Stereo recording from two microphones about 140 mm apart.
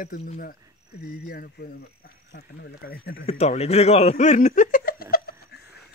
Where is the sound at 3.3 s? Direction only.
50° left (ahead or behind); by 5.3 s 90° left.